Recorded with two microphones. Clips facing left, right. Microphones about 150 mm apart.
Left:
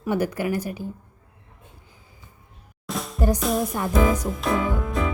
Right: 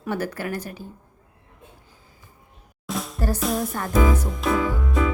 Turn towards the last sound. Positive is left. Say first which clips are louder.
# right 1 dB
turn(degrees=0)  # may be behind; listen again after turning